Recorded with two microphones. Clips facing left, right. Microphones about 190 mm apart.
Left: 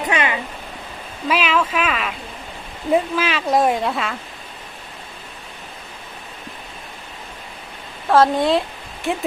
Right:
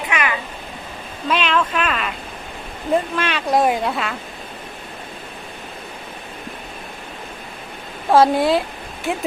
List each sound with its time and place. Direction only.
0.0 s a sound: 30° left (ahead or behind)
1.3 s a woman's voice: 5° left (ahead or behind)
8.1 s a woman's voice: 10° right (ahead or behind)